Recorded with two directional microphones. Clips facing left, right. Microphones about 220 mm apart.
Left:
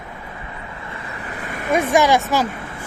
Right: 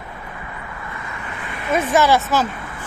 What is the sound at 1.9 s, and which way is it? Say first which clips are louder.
Speech: even; 15° left (ahead or behind).